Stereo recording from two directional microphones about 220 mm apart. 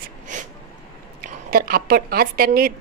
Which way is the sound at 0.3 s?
35° right (ahead or behind).